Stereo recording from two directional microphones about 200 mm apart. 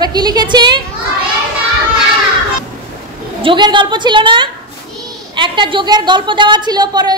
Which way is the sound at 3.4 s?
25° right (ahead or behind).